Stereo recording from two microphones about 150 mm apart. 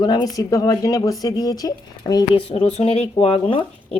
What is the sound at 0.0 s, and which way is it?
Speech, 25° left (ahead or behind).